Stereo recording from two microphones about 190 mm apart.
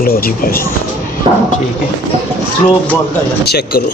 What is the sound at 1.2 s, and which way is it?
Speech, 25° right (ahead or behind).